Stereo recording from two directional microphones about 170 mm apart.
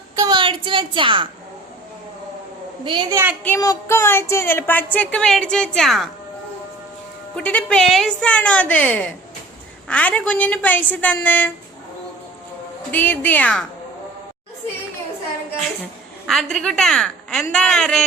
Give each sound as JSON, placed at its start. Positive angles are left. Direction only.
{"t": 0.2, "sound": "a woman's voice", "side_deg": -25}
{"t": 2.8, "sound": "a woman's voice", "side_deg": -25}
{"t": 3.4, "sound": "a woman's voice", "side_deg": 15}
{"t": 7.3, "sound": "a woman's voice", "side_deg": 5}
{"t": 12.9, "sound": "a woman's voice", "side_deg": 10}
{"t": 16.2, "sound": "a woman's voice", "side_deg": 0}